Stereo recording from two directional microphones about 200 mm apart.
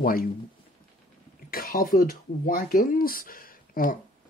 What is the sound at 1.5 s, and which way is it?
Speech, 45° left (ahead or behind).